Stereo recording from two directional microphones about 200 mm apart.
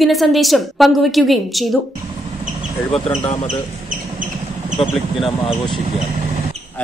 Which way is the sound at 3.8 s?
40° right (ahead or behind).